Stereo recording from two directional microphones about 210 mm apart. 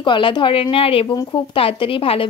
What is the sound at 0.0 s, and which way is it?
Speech, 25° left (ahead or behind).